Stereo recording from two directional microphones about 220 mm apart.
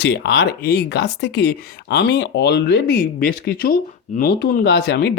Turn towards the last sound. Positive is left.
turn(degrees=45)  # may be behind; listen again after turning